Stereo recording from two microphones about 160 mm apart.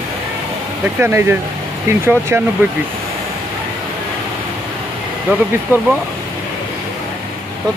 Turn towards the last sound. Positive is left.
turn(degrees=-10)  # may be behind; listen again after turning